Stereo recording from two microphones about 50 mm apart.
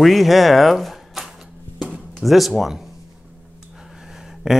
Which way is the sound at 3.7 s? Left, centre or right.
Centre.